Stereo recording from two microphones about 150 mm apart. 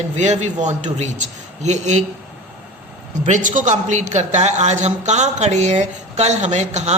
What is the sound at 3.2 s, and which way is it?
A man's voice, 55° right (ahead or behind).